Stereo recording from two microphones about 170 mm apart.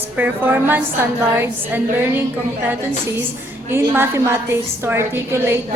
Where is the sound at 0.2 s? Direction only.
10° right (ahead or behind).